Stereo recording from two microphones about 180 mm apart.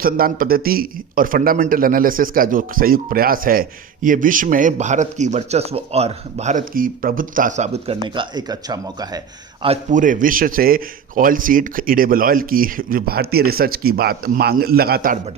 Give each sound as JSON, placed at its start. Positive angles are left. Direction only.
{"t": 0.0, "sound": "a man's voice", "side_deg": -55}
{"t": 8.0, "sound": "speech", "side_deg": -25}
{"t": 9.6, "sound": "a man's voice", "side_deg": -45}